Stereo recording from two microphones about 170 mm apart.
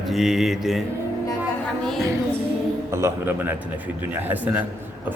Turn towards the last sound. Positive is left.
turn(degrees=-10)  # may be behind; listen again after turning